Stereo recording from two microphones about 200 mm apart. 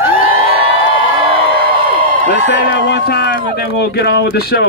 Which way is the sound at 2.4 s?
50° left (ahead or behind).